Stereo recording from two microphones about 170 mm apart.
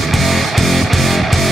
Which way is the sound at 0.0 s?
Centre (ahead or behind).